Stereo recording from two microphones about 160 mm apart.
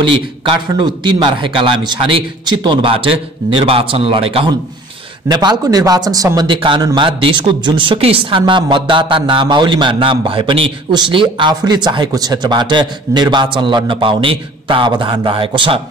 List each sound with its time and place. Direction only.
0.0 s a man's voice: 30° right (ahead or behind)